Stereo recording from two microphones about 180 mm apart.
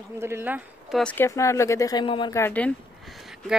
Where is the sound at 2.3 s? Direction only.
10° left (ahead or behind).